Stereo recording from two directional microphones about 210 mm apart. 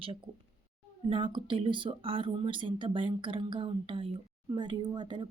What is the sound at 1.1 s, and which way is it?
Speech, 25° right (ahead or behind).